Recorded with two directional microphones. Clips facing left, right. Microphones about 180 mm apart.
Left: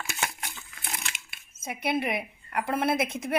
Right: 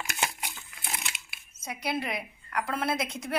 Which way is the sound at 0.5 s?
Centre (ahead or behind).